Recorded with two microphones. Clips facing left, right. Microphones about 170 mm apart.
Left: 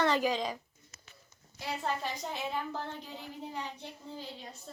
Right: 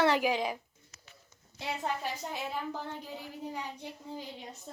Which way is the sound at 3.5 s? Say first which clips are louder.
Right 1 dB; 15° right (ahead or behind).